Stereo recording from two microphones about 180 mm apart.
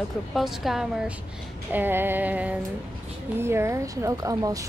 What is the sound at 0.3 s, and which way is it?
A woman's voice, centre (ahead or behind).